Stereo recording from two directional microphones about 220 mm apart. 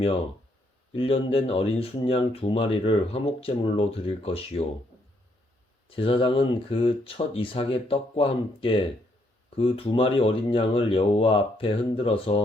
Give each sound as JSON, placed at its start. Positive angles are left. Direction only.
{"t": 0.9, "sound": "speech", "side_deg": 25}
{"t": 6.0, "sound": "speech", "side_deg": 25}